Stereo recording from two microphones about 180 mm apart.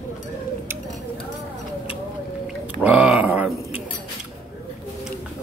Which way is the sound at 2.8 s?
5° right (ahead or behind).